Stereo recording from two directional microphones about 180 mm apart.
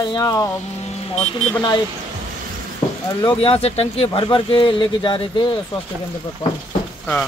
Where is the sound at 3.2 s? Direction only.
30° left (ahead or behind).